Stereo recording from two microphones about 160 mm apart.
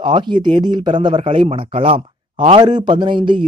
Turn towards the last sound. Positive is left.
turn(degrees=-30)  # may be behind; listen again after turning